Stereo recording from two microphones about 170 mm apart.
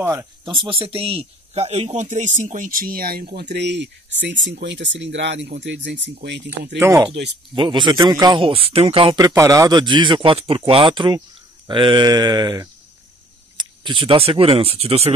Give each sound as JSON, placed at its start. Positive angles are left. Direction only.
{"t": 0.0, "sound": "speech", "side_deg": -15}
{"t": 0.5, "sound": "speech", "side_deg": -30}
{"t": 6.8, "sound": "speech", "side_deg": -15}
{"t": 7.5, "sound": "a man's voice", "side_deg": -30}